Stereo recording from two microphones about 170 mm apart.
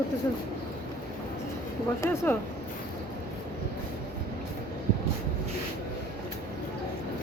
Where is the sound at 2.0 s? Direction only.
10° left (ahead or behind).